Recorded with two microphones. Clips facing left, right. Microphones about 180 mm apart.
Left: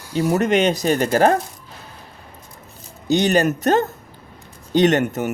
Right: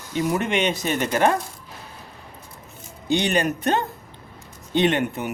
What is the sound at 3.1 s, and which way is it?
Speech, 40° left (ahead or behind).